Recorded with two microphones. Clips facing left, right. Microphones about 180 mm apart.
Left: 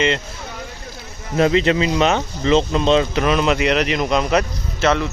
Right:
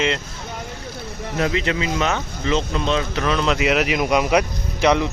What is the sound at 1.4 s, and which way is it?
Speech, 30° left (ahead or behind).